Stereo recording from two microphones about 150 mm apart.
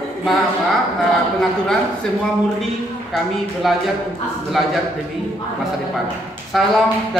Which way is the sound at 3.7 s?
Centre (ahead or behind).